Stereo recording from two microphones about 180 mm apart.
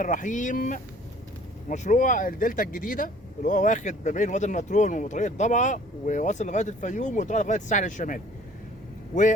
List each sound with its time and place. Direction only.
0.0 s speech: 45° left (ahead or behind)